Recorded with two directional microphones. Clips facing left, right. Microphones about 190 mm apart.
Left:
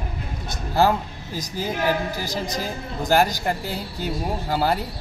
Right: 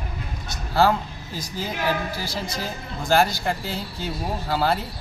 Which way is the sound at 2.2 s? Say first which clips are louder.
Left 3 dB; 40° left (ahead or behind).